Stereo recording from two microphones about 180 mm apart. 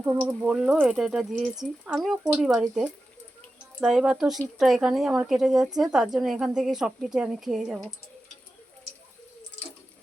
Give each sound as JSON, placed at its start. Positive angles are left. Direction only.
{"t": 0.4, "sound": "speech", "side_deg": -5}